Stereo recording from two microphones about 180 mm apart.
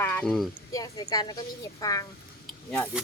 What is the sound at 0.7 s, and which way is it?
A woman's voice, 20° left (ahead or behind).